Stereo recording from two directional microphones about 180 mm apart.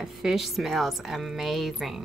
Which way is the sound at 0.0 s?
Centre (ahead or behind).